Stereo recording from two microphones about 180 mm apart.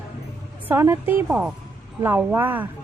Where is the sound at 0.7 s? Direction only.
10° right (ahead or behind).